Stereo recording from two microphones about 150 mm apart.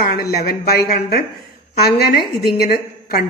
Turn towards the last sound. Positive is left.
turn(degrees=90)